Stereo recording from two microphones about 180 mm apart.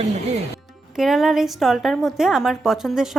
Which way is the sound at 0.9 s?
Centre (ahead or behind).